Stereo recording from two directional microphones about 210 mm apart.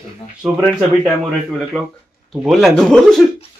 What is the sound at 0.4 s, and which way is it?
Speech, 5° right (ahead or behind).